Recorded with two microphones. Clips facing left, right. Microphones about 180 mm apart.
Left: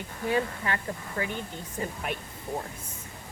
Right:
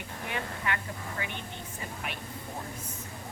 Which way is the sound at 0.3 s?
35° left (ahead or behind).